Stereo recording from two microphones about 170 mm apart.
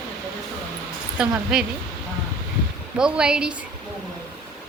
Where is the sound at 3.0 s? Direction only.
5° right (ahead or behind).